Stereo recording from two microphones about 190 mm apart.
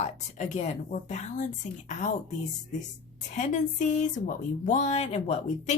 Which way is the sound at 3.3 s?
40° left (ahead or behind).